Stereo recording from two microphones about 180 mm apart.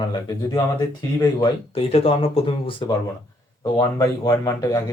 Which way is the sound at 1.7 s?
30° left (ahead or behind).